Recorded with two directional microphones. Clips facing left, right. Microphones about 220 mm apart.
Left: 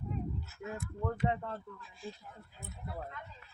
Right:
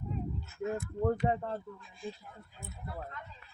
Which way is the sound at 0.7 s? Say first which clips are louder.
Right 7 dB; 40° right (ahead or behind).